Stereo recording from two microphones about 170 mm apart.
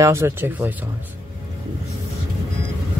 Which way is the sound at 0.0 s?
15° right (ahead or behind).